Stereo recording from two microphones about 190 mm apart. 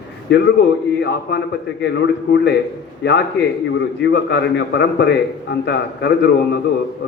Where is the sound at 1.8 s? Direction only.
65° left (ahead or behind).